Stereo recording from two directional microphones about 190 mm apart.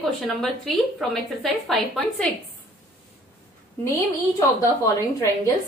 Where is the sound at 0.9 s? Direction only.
Centre (ahead or behind).